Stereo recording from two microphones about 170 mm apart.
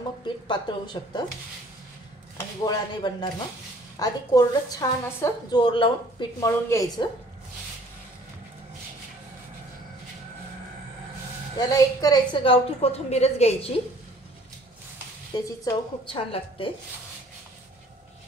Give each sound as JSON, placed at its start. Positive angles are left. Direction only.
{"t": 0.5, "sound": "a woman's voice", "side_deg": 25}
{"t": 2.6, "sound": "a woman's voice", "side_deg": 25}
{"t": 6.4, "sound": "a woman's voice", "side_deg": 20}
{"t": 11.5, "sound": "a woman's voice", "side_deg": 20}
{"t": 15.3, "sound": "a woman's voice", "side_deg": 25}